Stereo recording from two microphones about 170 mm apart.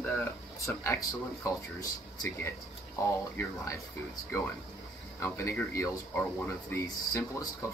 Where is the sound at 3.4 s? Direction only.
15° left (ahead or behind).